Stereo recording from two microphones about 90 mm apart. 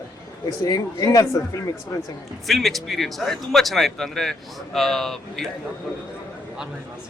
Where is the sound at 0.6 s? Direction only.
45° left (ahead or behind).